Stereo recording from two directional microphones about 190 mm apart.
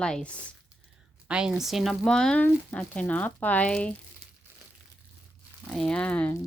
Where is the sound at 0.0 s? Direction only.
5° left (ahead or behind).